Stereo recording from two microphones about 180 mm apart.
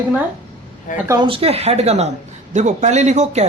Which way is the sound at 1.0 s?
15° right (ahead or behind).